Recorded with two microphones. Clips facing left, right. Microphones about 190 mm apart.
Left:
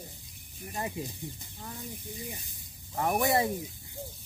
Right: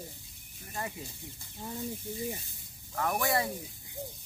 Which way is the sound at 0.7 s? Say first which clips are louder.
Left 4 dB; 20° left (ahead or behind).